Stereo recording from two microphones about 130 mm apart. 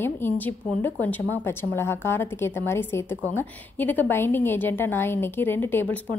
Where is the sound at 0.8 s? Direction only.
15° left (ahead or behind).